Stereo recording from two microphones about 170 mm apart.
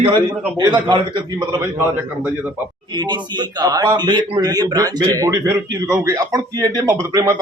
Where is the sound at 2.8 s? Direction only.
25° right (ahead or behind).